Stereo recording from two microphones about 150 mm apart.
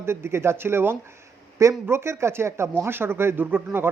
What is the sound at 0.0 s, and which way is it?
Speech, 15° right (ahead or behind).